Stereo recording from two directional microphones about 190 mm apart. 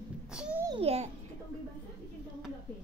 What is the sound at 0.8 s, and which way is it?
Speech, 35° right (ahead or behind).